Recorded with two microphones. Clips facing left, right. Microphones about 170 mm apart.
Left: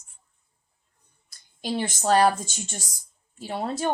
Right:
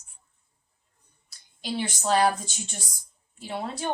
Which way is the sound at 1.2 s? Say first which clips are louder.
Left 3 dB; 50° left (ahead or behind).